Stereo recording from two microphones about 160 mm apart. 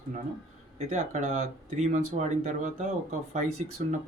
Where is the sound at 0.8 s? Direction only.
45° right (ahead or behind).